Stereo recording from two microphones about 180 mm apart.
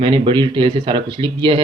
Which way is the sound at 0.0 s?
30° right (ahead or behind).